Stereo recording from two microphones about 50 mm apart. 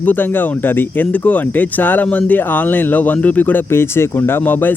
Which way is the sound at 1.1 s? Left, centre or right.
Left.